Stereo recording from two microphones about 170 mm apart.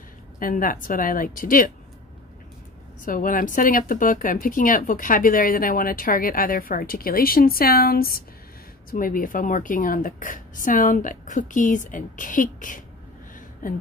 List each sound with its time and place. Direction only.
0.4 s a woman's voice: 55° left (ahead or behind)
3.1 s a woman's voice: 55° left (ahead or behind)